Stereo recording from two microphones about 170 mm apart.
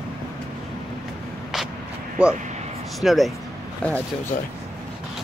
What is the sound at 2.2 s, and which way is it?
Speech, 5° right (ahead or behind).